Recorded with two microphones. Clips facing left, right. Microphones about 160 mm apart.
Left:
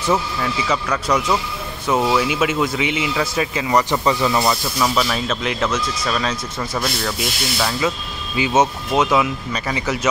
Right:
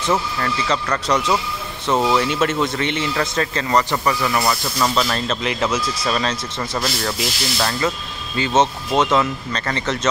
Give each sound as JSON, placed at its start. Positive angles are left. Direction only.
{"t": 0.0, "sound": "a man's voice", "side_deg": 5}
{"t": 4.7, "sound": "a man's voice", "side_deg": 5}